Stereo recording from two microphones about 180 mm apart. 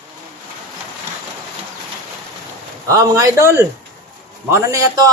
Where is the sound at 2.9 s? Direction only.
20° right (ahead or behind).